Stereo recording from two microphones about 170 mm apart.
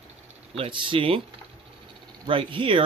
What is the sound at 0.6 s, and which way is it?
Speech, 30° right (ahead or behind).